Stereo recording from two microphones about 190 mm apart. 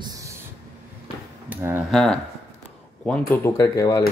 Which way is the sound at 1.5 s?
10° right (ahead or behind).